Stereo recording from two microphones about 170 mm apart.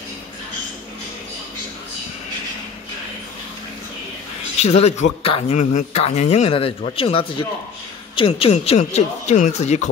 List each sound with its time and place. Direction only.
4.6 s speech: 35° left (ahead or behind)